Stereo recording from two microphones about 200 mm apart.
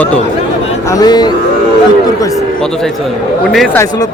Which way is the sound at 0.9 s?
20° left (ahead or behind).